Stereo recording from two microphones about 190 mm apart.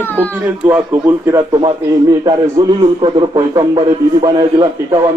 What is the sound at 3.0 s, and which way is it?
A man's voice, 20° right (ahead or behind).